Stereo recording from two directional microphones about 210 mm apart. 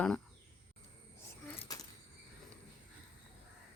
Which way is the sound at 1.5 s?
15° left (ahead or behind).